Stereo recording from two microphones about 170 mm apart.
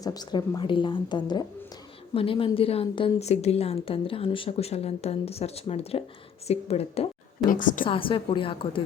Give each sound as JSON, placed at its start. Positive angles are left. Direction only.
{"t": 0.0, "sound": "a woman's voice", "side_deg": 25}
{"t": 7.5, "sound": "a woman's voice", "side_deg": 50}
{"t": 7.9, "sound": "a woman's voice", "side_deg": 30}